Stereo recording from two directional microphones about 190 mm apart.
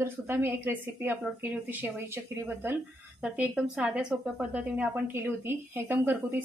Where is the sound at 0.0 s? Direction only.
10° right (ahead or behind).